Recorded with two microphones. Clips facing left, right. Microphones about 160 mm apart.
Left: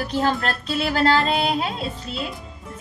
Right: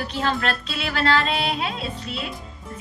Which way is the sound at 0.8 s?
40° left (ahead or behind).